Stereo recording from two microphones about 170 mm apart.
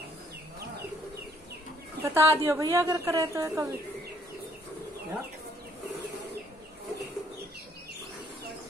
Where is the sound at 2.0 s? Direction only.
15° right (ahead or behind).